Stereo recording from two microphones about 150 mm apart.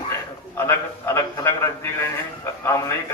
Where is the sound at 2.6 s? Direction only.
20° left (ahead or behind).